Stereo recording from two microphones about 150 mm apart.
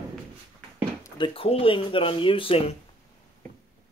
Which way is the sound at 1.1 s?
35° left (ahead or behind).